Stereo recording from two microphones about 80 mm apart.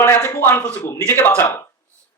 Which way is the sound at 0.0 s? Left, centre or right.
Left.